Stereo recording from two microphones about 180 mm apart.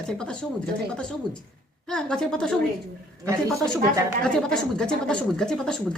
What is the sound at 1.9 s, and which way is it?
Speech, 5° left (ahead or behind).